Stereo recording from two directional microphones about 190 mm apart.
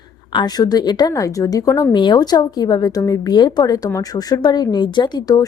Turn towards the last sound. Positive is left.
turn(degrees=20)  # may be behind; listen again after turning